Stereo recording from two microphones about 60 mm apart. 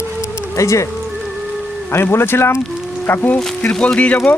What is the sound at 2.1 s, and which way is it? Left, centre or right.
Speech, left.